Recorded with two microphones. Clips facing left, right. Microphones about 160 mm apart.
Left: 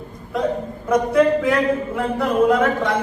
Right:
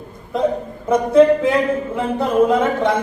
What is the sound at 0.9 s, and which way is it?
A man's voice, 25° right (ahead or behind).